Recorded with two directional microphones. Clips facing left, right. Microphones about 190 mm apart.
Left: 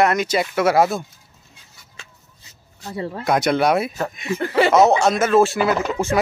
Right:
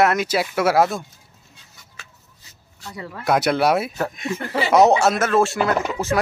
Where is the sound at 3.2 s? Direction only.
5° right (ahead or behind).